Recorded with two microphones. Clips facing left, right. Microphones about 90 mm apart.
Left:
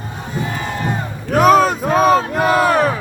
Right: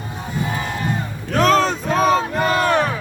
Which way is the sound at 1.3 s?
10° left (ahead or behind).